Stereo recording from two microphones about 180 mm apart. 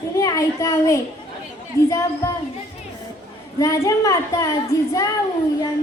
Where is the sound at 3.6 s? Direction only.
20° left (ahead or behind).